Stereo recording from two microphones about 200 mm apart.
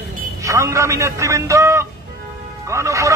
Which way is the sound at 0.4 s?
15° right (ahead or behind).